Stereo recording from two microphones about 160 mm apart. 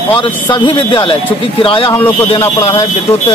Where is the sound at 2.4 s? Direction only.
25° left (ahead or behind).